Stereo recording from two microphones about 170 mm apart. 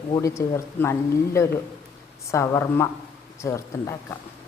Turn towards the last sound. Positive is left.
turn(degrees=15)  # may be behind; listen again after turning